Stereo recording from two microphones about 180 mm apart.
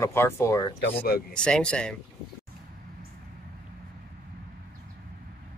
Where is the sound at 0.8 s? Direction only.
60° left (ahead or behind).